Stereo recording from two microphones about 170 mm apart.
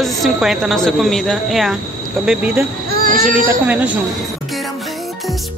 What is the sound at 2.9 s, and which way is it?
Speech, 55° right (ahead or behind).